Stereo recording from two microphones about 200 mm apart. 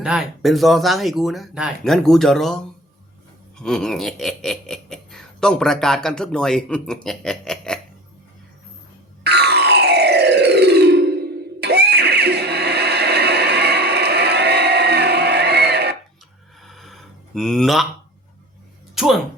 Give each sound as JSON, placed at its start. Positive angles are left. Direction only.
{"t": 0.0, "sound": "speech", "side_deg": -5}
{"t": 3.6, "sound": "speech", "side_deg": 5}
{"t": 9.2, "sound": "music", "side_deg": -55}
{"t": 16.6, "sound": "a sound", "side_deg": 0}
{"t": 19.0, "sound": "speech", "side_deg": 0}